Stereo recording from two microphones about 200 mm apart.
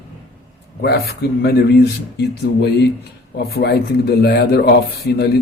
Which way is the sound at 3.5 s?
55° left (ahead or behind).